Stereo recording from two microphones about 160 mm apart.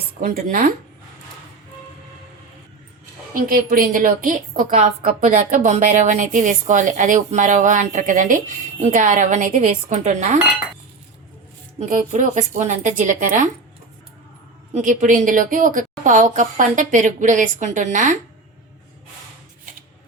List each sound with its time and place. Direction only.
0.2 s speech: 55° right (ahead or behind)
3.3 s a woman's voice: 65° right (ahead or behind)
11.8 s a woman's voice: 50° right (ahead or behind)
14.7 s a woman's voice: 50° right (ahead or behind)